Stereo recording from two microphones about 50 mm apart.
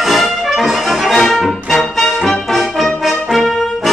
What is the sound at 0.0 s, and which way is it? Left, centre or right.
Music, centre.